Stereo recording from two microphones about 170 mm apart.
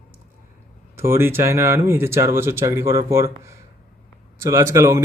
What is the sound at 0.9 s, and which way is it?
Speech, 15° right (ahead or behind).